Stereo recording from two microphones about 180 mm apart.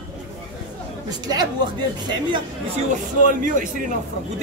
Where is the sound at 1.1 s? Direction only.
20° right (ahead or behind).